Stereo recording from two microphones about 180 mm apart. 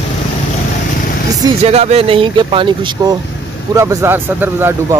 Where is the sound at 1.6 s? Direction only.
35° right (ahead or behind).